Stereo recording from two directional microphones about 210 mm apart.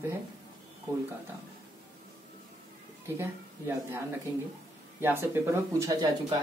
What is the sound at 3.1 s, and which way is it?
Speech, 10° right (ahead or behind).